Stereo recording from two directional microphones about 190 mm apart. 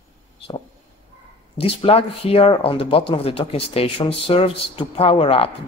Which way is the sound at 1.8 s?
30° left (ahead or behind).